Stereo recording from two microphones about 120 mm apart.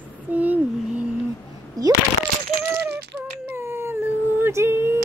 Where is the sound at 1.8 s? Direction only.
30° right (ahead or behind).